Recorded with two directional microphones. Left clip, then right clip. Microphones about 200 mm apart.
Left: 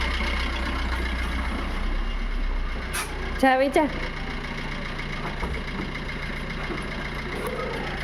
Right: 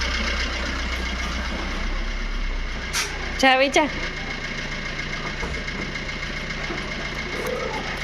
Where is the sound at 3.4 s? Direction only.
20° left (ahead or behind).